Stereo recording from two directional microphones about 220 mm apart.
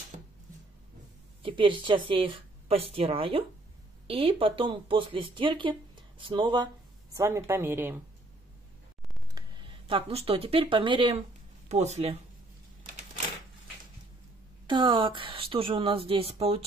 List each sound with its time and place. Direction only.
1.4 s a woman's voice: 20° right (ahead or behind)
9.3 s speech: 20° right (ahead or behind)
14.7 s speech: 20° right (ahead or behind)